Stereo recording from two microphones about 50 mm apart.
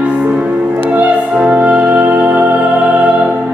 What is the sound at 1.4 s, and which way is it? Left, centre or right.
Music, right.